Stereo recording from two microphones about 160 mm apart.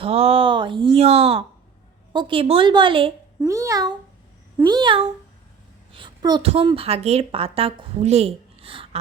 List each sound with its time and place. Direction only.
0.0 s speech: 40° right (ahead or behind)
3.4 s a child's voice: 20° right (ahead or behind)
5.9 s a sound: 30° right (ahead or behind)
6.7 s speech: 35° right (ahead or behind)